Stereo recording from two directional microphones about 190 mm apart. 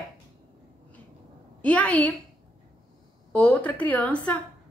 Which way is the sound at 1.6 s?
5° left (ahead or behind).